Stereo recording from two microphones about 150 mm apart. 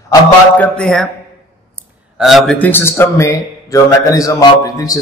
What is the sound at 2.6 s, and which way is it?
A man's voice, 15° left (ahead or behind).